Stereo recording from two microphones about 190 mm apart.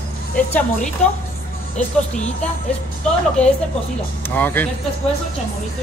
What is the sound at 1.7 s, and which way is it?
Speech, 35° left (ahead or behind).